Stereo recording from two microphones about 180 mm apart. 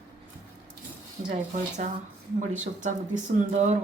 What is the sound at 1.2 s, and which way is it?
Speech, 40° right (ahead or behind).